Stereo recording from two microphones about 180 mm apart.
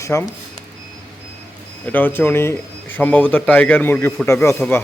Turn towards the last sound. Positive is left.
turn(degrees=10)  # may be behind; listen again after turning